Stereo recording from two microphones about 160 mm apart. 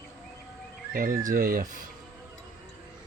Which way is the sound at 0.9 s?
60° right (ahead or behind).